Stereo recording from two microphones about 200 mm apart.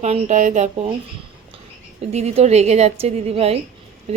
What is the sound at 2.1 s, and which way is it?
Speech, 30° right (ahead or behind).